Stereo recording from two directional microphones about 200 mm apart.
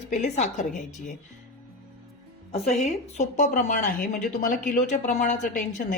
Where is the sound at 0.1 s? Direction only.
35° left (ahead or behind).